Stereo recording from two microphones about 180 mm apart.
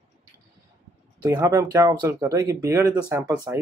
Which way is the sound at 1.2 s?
15° right (ahead or behind).